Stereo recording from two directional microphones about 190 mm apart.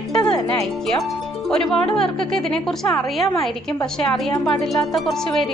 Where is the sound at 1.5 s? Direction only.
5° left (ahead or behind).